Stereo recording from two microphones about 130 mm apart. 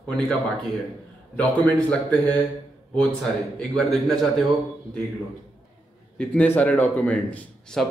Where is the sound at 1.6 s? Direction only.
10° left (ahead or behind).